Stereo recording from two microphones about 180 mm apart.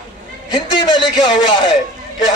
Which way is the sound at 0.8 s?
25° left (ahead or behind).